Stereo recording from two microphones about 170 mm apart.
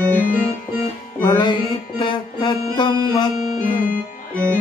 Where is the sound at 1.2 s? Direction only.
25° left (ahead or behind).